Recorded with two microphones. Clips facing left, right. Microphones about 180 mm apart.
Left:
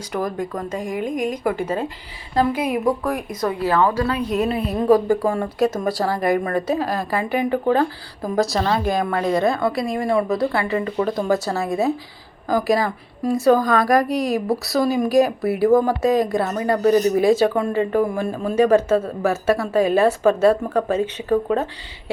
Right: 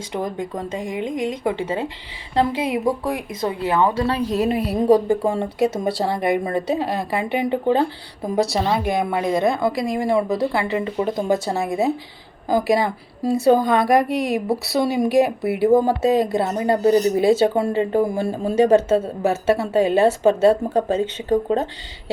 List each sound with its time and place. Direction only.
0.1 s speech: 25° right (ahead or behind)
8.5 s speech: 10° right (ahead or behind)